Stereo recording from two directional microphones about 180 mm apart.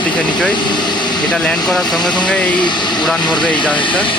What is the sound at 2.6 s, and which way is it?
Speech, 25° left (ahead or behind).